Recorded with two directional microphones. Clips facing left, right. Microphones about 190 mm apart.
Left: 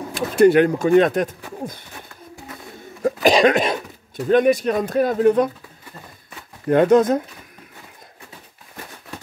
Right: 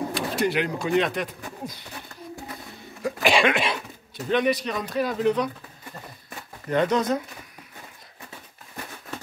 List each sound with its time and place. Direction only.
0.1 s speech: 50° left (ahead or behind)
3.0 s a sound: 40° left (ahead or behind)
4.3 s speech: 50° left (ahead or behind)
6.7 s speech: 50° left (ahead or behind)